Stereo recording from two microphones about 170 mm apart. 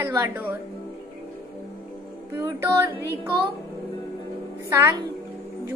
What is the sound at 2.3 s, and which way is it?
A woman's voice, 15° right (ahead or behind).